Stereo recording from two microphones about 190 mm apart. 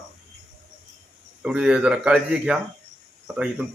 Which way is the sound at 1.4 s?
5° right (ahead or behind).